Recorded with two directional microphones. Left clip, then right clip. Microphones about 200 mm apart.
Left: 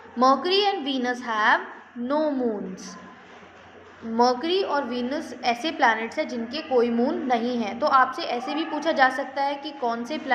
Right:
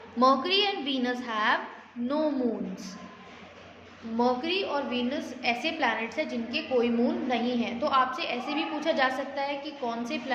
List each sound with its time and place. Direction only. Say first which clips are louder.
0.2 s a woman's voice: left 3 dB; 10° left (ahead or behind)
4.2 s a woman's voice: left 6 dB; 20° left (ahead or behind)